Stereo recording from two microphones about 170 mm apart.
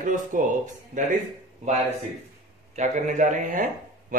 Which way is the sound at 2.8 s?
45° right (ahead or behind).